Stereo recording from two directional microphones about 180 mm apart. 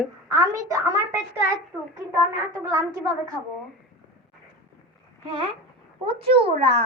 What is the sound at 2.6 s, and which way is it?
Speech, 15° right (ahead or behind).